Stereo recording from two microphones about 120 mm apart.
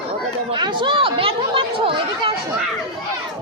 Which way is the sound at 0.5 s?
40° right (ahead or behind).